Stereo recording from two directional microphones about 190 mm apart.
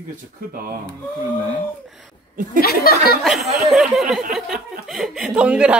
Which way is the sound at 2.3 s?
45° right (ahead or behind).